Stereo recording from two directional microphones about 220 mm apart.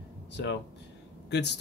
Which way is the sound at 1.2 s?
50° left (ahead or behind).